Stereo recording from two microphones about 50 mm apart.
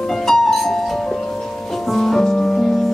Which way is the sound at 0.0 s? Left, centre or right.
Centre.